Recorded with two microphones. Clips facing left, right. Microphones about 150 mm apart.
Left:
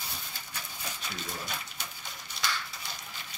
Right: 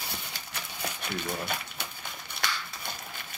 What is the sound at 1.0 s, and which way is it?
Speech, 60° right (ahead or behind).